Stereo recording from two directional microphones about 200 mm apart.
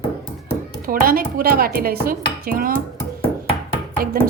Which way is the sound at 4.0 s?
45° right (ahead or behind).